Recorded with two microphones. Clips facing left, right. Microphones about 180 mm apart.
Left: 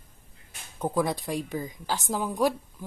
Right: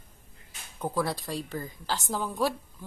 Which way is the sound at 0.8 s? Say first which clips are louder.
Left 3 dB; 20° left (ahead or behind).